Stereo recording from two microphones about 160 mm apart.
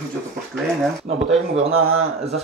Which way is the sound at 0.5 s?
Centre (ahead or behind).